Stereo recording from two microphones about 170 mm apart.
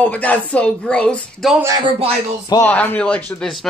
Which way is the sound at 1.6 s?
20° right (ahead or behind).